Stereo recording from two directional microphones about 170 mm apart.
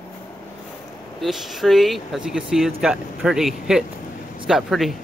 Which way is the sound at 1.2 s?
Centre (ahead or behind).